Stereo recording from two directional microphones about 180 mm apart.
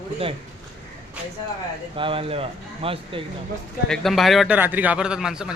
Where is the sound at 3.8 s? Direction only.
Centre (ahead or behind).